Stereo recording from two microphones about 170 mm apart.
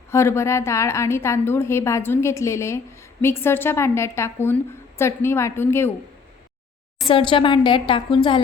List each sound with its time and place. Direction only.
0.1 s a woman's voice: 15° left (ahead or behind)
7.1 s a woman's voice: 30° left (ahead or behind)